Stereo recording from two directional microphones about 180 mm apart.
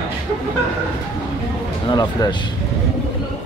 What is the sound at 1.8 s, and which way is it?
Speech, 25° left (ahead or behind).